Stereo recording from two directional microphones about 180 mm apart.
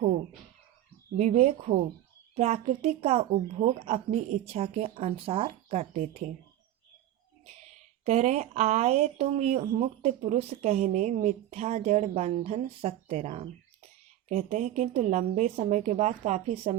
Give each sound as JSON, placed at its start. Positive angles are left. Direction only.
{"t": 1.1, "sound": "speech", "side_deg": -40}
{"t": 7.4, "sound": "speech", "side_deg": -40}